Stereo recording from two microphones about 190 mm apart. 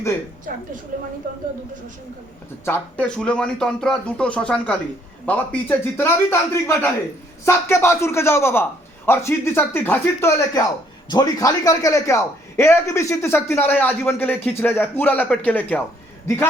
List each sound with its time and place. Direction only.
0.5 s a woman's voice: 50° right (ahead or behind)
2.6 s a man's voice: 10° left (ahead or behind)